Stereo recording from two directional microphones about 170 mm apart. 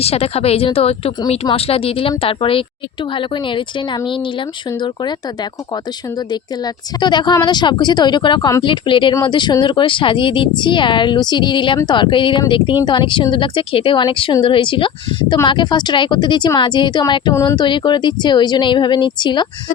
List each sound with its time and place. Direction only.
0.0 s a woman's voice: 35° left (ahead or behind)